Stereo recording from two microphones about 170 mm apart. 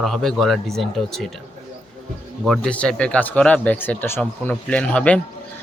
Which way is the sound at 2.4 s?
5° left (ahead or behind).